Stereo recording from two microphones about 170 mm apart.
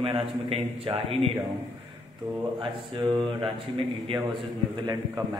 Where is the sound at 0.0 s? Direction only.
35° right (ahead or behind).